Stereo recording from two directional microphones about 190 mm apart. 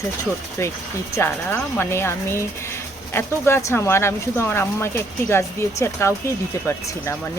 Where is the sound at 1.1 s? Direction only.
15° left (ahead or behind).